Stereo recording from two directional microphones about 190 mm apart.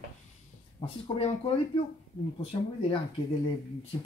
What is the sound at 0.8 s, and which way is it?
Speech, 30° left (ahead or behind).